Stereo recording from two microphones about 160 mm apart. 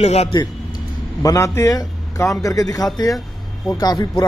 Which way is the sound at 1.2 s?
20° left (ahead or behind).